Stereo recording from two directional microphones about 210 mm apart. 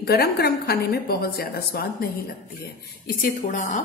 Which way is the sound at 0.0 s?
50° left (ahead or behind).